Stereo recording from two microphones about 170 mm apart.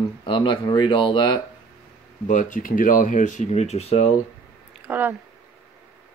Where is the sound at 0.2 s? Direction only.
30° left (ahead or behind).